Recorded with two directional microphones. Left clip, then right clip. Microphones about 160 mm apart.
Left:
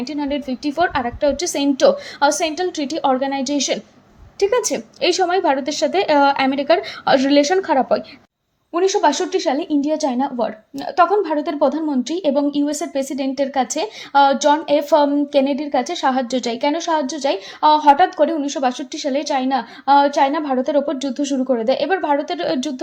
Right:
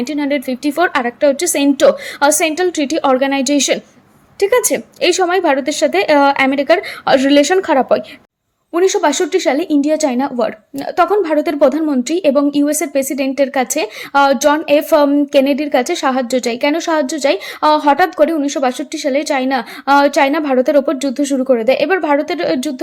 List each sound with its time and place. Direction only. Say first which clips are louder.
0.0 s a woman's voice: right 6 dB; 15° right (ahead or behind)
8.7 s a woman's voice: right 3 dB; 20° right (ahead or behind)